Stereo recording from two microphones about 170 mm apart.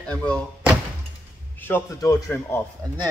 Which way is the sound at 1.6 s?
15° left (ahead or behind).